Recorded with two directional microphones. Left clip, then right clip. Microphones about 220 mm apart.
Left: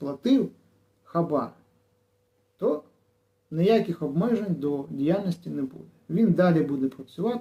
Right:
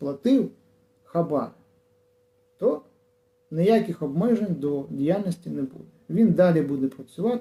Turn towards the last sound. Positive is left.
turn(degrees=-5)  # may be behind; listen again after turning